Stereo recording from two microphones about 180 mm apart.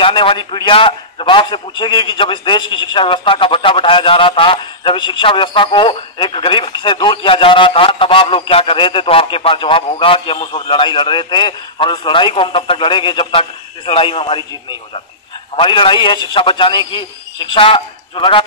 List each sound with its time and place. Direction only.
0.0 s a man's voice: 30° left (ahead or behind)